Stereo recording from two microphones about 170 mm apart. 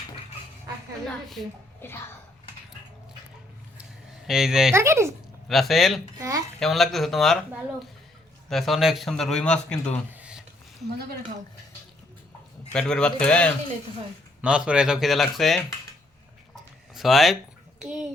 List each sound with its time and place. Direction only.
1.0 s a man's voice: centre (ahead or behind)
4.3 s a man's voice: centre (ahead or behind)
4.7 s speech: 15° right (ahead or behind)
5.5 s a man's voice: centre (ahead or behind)
6.1 s speech: 20° right (ahead or behind)
6.6 s a man's voice: centre (ahead or behind)
10.1 s a sound: 5° right (ahead or behind)
12.7 s a man's voice: 5° left (ahead or behind)
14.4 s a man's voice: 5° right (ahead or behind)
16.9 s a child's voice: centre (ahead or behind)